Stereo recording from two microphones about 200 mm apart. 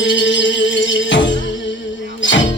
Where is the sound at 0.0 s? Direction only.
65° left (ahead or behind).